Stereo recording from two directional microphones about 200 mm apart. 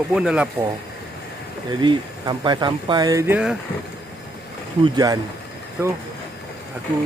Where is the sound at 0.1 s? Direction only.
5° right (ahead or behind).